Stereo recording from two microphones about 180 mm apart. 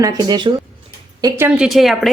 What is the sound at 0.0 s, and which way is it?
Speech, 25° right (ahead or behind).